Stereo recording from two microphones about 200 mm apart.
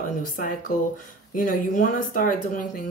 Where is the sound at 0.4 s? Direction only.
40° left (ahead or behind).